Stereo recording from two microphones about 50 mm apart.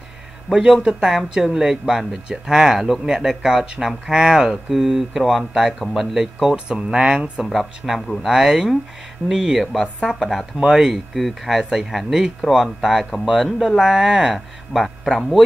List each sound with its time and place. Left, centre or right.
0.5 s speech: centre
6.5 s speech: centre
7.5 s speech: centre